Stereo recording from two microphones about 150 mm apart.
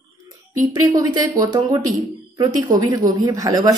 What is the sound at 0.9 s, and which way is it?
A woman's voice, 25° right (ahead or behind).